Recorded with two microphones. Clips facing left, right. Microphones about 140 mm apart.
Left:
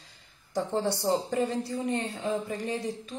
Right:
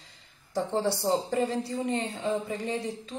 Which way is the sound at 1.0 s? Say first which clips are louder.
Even; 25° right (ahead or behind).